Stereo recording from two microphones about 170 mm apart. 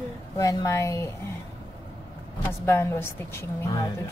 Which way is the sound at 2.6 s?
15° left (ahead or behind).